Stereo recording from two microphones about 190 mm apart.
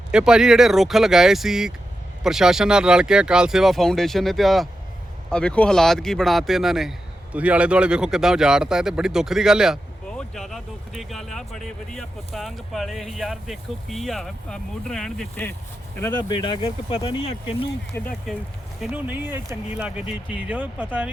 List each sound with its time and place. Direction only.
0.1 s a man's voice: 5° right (ahead or behind)
16.1 s speech: 25° left (ahead or behind)
17.9 s speech: 5° left (ahead or behind)
18.8 s speech: 5° right (ahead or behind)